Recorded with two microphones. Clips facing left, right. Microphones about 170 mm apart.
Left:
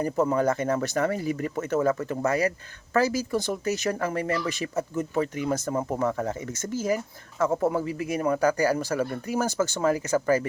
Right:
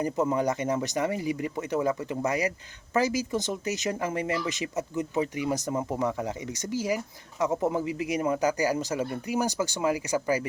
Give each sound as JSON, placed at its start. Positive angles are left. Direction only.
{"t": 0.0, "sound": "speech", "side_deg": -20}